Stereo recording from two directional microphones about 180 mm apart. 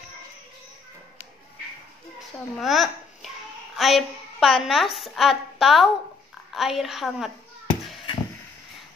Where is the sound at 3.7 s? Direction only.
Centre (ahead or behind).